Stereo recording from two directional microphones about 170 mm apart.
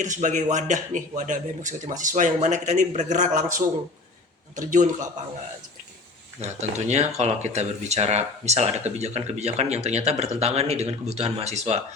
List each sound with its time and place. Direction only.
0.0 s a man's voice: 45° right (ahead or behind)
6.4 s speech: 40° right (ahead or behind)